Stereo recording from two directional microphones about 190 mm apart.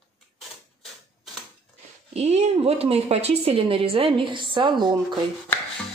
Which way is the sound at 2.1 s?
35° right (ahead or behind).